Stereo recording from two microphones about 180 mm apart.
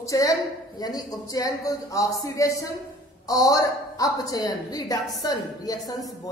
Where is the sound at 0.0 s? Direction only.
20° left (ahead or behind).